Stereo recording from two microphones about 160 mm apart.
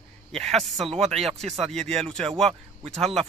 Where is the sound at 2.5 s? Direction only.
40° right (ahead or behind).